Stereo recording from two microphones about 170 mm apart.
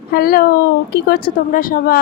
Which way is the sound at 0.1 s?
60° left (ahead or behind).